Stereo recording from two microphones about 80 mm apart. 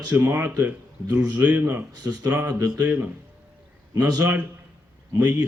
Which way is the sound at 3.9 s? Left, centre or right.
Right.